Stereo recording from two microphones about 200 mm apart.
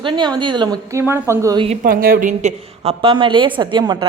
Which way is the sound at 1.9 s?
45° right (ahead or behind).